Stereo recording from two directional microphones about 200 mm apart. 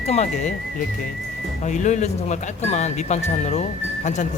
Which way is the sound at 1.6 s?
35° left (ahead or behind).